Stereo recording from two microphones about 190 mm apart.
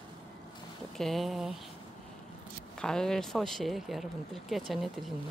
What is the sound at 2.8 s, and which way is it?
Speech, 5° left (ahead or behind).